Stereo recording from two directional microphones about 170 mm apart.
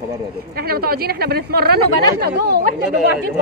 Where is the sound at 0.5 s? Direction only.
65° right (ahead or behind).